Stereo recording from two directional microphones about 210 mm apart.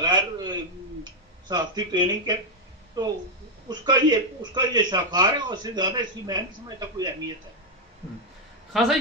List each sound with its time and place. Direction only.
0.0 s a sound: 20° right (ahead or behind)
1.5 s a man's voice: 20° right (ahead or behind)
3.6 s a man's voice: 20° right (ahead or behind)